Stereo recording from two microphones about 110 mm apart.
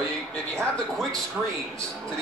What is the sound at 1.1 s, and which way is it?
Speech, 30° right (ahead or behind).